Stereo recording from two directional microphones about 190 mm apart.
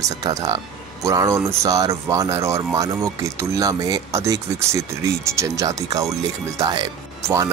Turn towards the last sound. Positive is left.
turn(degrees=-15)  # may be behind; listen again after turning